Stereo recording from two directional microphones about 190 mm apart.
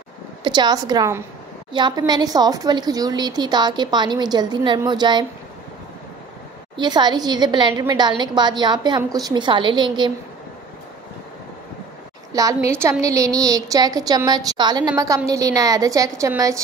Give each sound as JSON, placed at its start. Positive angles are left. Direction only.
{"t": 0.4, "sound": "a woman's voice", "side_deg": -20}
{"t": 6.8, "sound": "a woman's voice", "side_deg": -25}
{"t": 12.3, "sound": "a woman's voice", "side_deg": -20}